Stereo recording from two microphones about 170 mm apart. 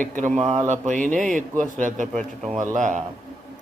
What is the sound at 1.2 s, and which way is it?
Speech, 5° left (ahead or behind).